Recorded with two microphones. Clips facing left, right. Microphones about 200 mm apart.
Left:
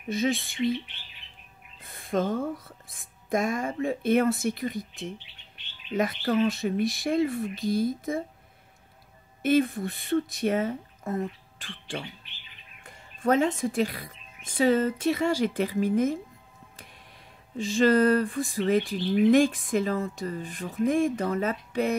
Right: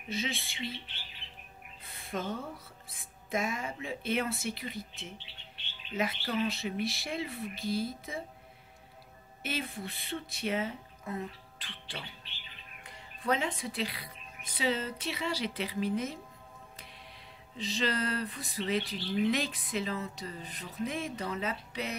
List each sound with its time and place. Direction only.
0.1 s bird: 45° left (ahead or behind)
1.8 s speech: 50° left (ahead or behind)
5.9 s bird: 45° left (ahead or behind)
9.4 s a woman's voice: 50° left (ahead or behind)
17.6 s bird: 50° left (ahead or behind)